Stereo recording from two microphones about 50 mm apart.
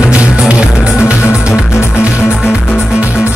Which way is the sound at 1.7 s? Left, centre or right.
Left.